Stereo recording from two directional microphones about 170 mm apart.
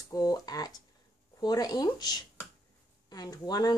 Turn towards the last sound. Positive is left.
turn(degrees=20)  # may be behind; listen again after turning